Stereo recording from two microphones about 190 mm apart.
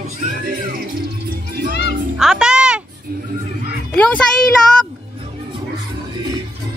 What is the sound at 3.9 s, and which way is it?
Speech, 5° left (ahead or behind).